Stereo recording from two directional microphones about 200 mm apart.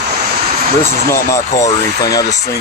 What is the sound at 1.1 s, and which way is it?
Speech, 15° left (ahead or behind).